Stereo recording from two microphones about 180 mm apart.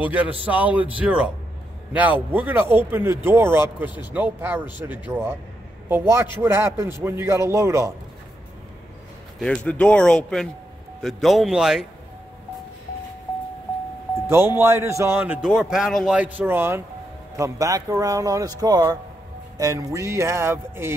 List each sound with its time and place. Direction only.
0.0 s a man's voice: 10° right (ahead or behind)
9.4 s speech: 5° left (ahead or behind)
14.3 s a man's voice: 15° right (ahead or behind)